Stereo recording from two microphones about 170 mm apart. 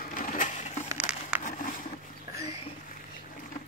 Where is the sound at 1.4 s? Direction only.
50° left (ahead or behind).